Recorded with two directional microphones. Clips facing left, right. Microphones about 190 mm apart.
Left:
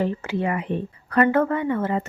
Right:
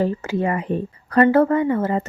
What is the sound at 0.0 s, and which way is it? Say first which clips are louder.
Speech: right 3 dB; 40° right (ahead or behind).